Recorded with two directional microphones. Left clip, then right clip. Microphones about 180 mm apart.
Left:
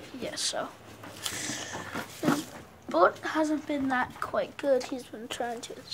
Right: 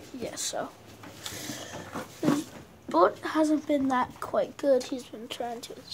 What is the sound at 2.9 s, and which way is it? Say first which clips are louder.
A woman's voice: even; 10° right (ahead or behind).